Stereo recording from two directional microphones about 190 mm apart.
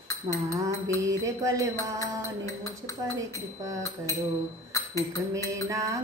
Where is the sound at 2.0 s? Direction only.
15° left (ahead or behind).